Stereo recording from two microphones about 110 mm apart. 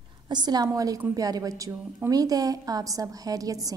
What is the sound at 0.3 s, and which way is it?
A woman's voice, 40° right (ahead or behind).